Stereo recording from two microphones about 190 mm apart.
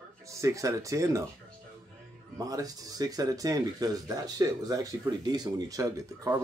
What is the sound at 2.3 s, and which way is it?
Speech, 20° right (ahead or behind).